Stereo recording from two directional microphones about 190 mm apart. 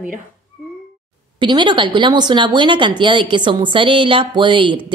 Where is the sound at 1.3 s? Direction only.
25° right (ahead or behind).